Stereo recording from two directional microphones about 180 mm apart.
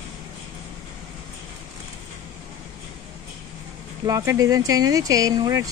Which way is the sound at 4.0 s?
20° right (ahead or behind).